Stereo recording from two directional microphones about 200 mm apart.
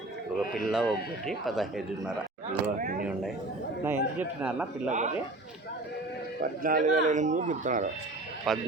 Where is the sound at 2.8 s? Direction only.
45° right (ahead or behind).